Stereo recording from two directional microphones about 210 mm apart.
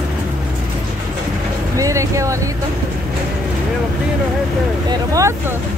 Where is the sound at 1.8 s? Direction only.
15° right (ahead or behind).